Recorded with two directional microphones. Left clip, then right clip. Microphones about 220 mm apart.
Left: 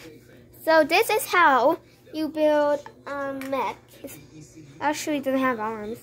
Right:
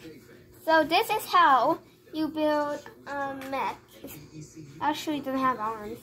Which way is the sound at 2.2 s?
40° left (ahead or behind).